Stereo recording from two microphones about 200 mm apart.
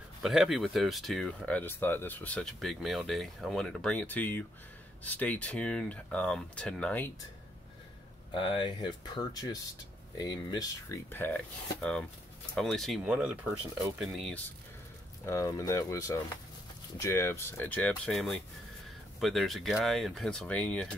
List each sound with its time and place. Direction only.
0.2 s speech: centre (ahead or behind)
8.4 s speech: 25° left (ahead or behind); by 14.0 s 10° right (ahead or behind)
14.0 s speech: centre (ahead or behind)
15.2 s speech: 15° left (ahead or behind)